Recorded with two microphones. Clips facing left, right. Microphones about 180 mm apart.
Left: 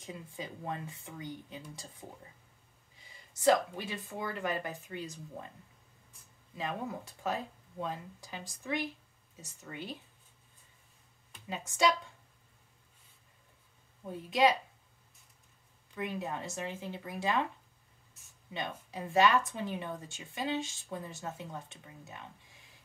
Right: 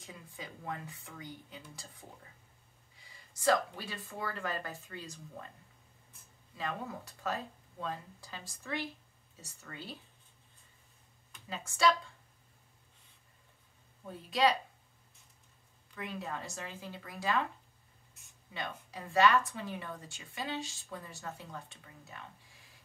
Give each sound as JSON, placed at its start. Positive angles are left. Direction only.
{"t": 0.0, "sound": "speech", "side_deg": 25}
{"t": 6.5, "sound": "speech", "side_deg": 20}
{"t": 11.4, "sound": "speech", "side_deg": 20}
{"t": 14.0, "sound": "speech", "side_deg": 20}
{"t": 15.9, "sound": "speech", "side_deg": 20}
{"t": 18.5, "sound": "speech", "side_deg": 20}